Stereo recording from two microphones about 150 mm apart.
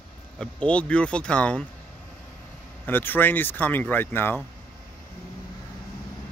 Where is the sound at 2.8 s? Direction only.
15° left (ahead or behind).